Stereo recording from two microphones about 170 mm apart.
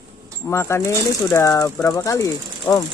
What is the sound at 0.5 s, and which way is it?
Speech, 15° left (ahead or behind).